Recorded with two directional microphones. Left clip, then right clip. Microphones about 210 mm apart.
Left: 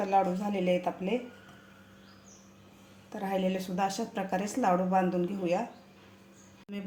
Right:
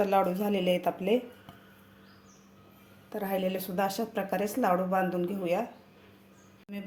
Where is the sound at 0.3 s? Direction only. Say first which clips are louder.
Right 2 dB; 30° right (ahead or behind).